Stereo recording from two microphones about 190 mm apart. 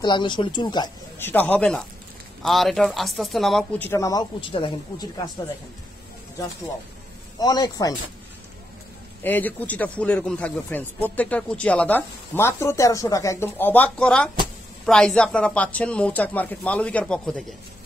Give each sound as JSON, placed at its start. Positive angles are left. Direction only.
{"t": 0.0, "sound": "speech", "side_deg": 25}
{"t": 1.3, "sound": "speech", "side_deg": 10}
{"t": 7.3, "sound": "speech", "side_deg": 20}
{"t": 9.2, "sound": "speech", "side_deg": 10}